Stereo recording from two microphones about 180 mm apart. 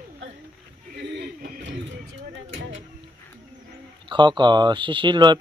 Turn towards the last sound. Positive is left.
turn(degrees=-25)  # may be behind; listen again after turning